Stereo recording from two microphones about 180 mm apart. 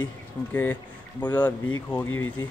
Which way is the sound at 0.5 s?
10° left (ahead or behind).